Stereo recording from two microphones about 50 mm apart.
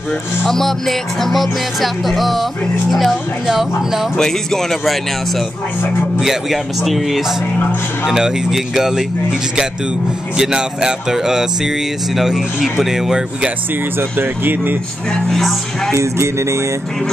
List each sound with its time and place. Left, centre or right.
0.5 s music: centre
4.2 s speech: centre
6.2 s music: centre
8.0 s speech: centre
10.3 s speech: centre
13.9 s speech: right
15.2 s speech: centre
15.9 s speech: right